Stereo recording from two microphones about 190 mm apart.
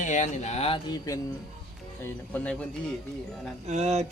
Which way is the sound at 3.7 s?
35° right (ahead or behind).